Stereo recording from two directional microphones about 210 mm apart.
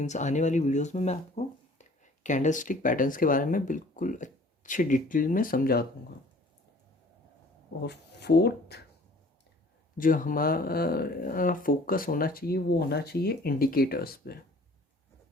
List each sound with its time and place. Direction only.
0.0 s speech: 35° left (ahead or behind)
7.8 s speech: 50° left (ahead or behind)
10.0 s speech: 40° left (ahead or behind)